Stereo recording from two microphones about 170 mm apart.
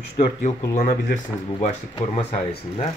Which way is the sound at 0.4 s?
50° left (ahead or behind).